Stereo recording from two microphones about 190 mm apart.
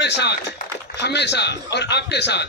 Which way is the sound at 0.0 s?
60° left (ahead or behind).